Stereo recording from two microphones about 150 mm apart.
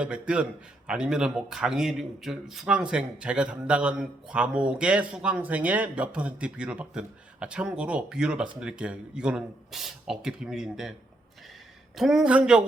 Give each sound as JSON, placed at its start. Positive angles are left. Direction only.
{"t": 0.0, "sound": "speech", "side_deg": -5}
{"t": 11.9, "sound": "speech", "side_deg": -5}